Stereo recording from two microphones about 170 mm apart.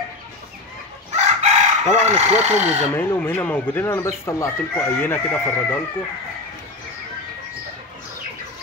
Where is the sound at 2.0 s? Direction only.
40° right (ahead or behind).